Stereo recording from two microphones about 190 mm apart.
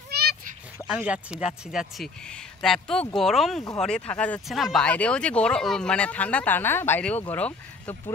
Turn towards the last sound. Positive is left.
turn(degrees=10)  # may be behind; listen again after turning